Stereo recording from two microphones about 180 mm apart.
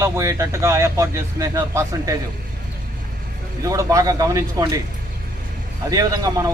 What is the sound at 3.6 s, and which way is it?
Speech, 15° right (ahead or behind).